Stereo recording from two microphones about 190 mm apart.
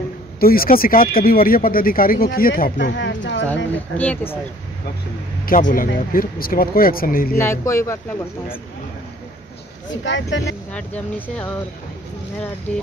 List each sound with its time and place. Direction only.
0.4 s speech: 50° left (ahead or behind)
2.8 s speech: 75° left (ahead or behind)
3.7 s speech: 10° left (ahead or behind)
5.4 s speech: 45° left (ahead or behind)
7.3 s speech: 15° left (ahead or behind)
10.0 s speech: 75° left (ahead or behind)
10.7 s speech: 5° left (ahead or behind)